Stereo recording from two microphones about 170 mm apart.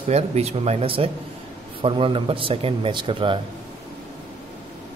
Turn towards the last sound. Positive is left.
turn(degrees=-30)  # may be behind; listen again after turning